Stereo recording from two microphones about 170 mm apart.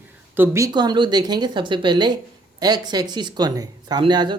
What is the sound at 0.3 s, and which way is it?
Speech, 15° right (ahead or behind).